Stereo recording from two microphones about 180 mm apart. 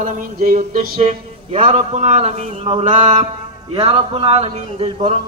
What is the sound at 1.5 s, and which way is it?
Speech, 30° right (ahead or behind).